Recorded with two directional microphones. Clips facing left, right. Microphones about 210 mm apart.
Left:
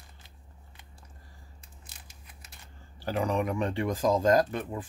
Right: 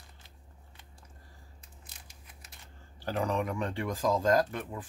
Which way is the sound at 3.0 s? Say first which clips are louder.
Left 2 dB; 10° left (ahead or behind).